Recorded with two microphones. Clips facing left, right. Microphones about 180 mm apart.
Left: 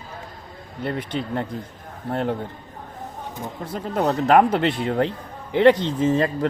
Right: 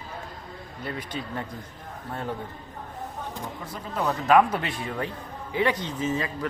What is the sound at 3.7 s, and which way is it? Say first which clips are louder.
Speech: left 6 dB; 65° left (ahead or behind).